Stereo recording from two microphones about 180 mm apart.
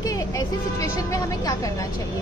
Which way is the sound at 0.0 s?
20° left (ahead or behind).